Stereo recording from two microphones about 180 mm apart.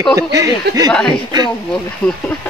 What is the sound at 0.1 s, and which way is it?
Speech, 20° right (ahead or behind).